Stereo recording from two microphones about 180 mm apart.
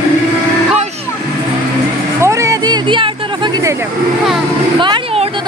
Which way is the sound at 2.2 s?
15° right (ahead or behind).